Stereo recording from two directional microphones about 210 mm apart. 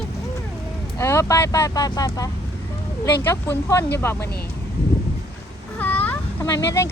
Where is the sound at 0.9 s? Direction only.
15° left (ahead or behind).